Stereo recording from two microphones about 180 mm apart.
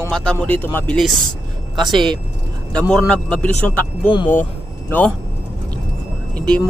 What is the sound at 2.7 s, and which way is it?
Speech, 5° left (ahead or behind).